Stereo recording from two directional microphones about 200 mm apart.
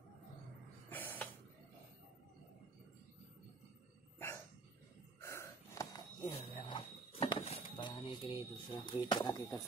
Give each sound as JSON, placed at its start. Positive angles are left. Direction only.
{"t": 0.8, "sound": "snort", "side_deg": 10}
{"t": 5.2, "sound": "snort", "side_deg": 15}